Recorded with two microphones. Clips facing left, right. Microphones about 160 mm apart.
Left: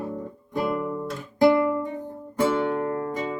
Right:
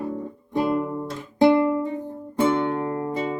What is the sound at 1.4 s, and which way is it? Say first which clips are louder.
Music: right 2 dB; 25° right (ahead or behind).